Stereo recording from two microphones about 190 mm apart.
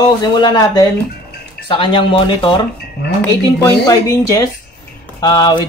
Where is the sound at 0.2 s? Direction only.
20° left (ahead or behind).